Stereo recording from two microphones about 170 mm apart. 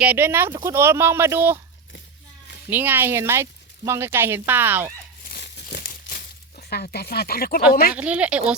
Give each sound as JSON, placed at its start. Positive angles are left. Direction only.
{"t": 0.0, "sound": "speech", "side_deg": -10}
{"t": 2.6, "sound": "speech", "side_deg": -10}
{"t": 5.2, "sound": "a sound", "side_deg": 70}
{"t": 5.8, "sound": "crumpling", "side_deg": 55}
{"t": 7.7, "sound": "a woman's voice", "side_deg": 60}
{"t": 7.9, "sound": "speech", "side_deg": -10}